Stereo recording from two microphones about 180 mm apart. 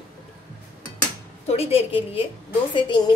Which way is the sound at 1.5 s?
35° left (ahead or behind).